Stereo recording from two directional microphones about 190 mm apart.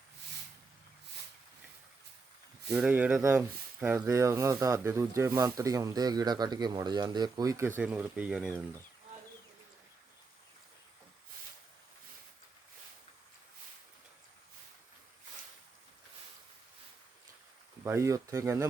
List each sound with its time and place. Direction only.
2.7 s speech: 10° right (ahead or behind)
7.8 s speech: 5° right (ahead or behind)
17.8 s speech: 15° right (ahead or behind)